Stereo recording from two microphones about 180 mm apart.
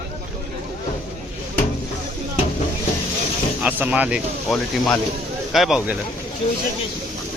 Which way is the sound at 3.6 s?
10° right (ahead or behind).